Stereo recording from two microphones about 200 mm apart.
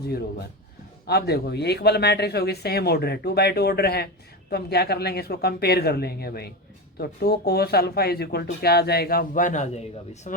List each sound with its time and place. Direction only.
1.0 s speech: 55° left (ahead or behind); by 10.4 s 40° left (ahead or behind)